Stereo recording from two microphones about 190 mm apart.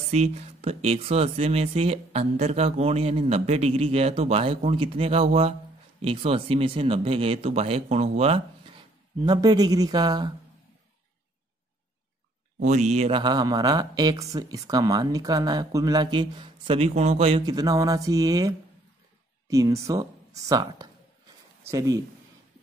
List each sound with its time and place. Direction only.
0.1 s speech: 35° right (ahead or behind)
12.6 s speech: 40° right (ahead or behind)
17.5 s speech: 20° right (ahead or behind)